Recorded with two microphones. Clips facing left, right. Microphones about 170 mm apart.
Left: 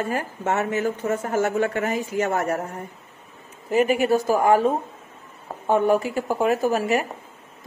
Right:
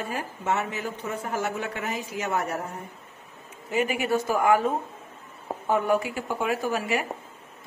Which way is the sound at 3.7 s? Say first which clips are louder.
Left 6 dB; 40° left (ahead or behind).